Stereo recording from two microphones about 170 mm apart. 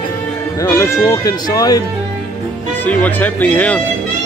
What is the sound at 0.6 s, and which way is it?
Speech, 20° left (ahead or behind).